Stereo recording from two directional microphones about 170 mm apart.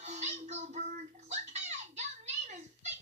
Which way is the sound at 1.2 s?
40° right (ahead or behind).